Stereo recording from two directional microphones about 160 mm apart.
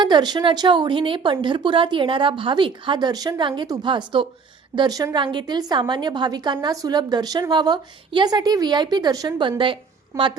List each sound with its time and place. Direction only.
0.0 s a woman's voice: 30° right (ahead or behind)
10.1 s a woman's voice: 20° right (ahead or behind)